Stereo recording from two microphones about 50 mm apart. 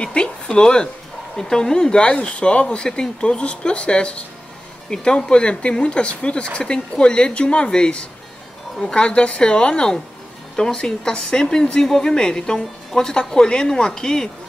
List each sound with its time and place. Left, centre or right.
0.0 s speech: centre